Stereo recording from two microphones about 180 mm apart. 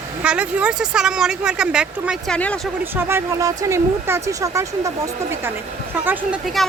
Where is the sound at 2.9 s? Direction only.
15° right (ahead or behind).